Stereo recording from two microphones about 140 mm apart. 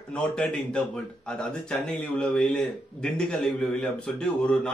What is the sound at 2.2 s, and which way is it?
Speech, 5° left (ahead or behind).